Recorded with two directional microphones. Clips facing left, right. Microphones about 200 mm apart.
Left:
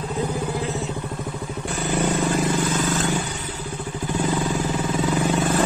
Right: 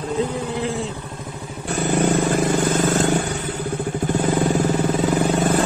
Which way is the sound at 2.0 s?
55° right (ahead or behind).